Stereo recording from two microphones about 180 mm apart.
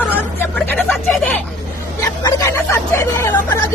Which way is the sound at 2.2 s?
15° left (ahead or behind).